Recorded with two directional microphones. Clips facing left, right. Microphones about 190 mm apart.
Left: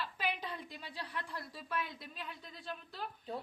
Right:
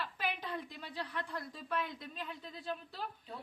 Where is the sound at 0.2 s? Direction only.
10° left (ahead or behind).